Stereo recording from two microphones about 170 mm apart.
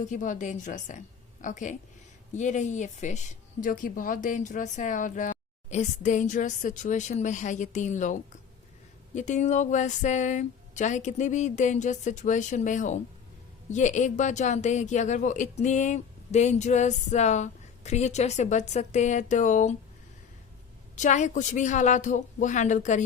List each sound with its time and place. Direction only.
0.0 s speech: 50° left (ahead or behind)
20.9 s speech: 45° left (ahead or behind)